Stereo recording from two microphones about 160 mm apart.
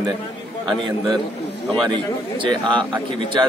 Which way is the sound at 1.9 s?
30° right (ahead or behind).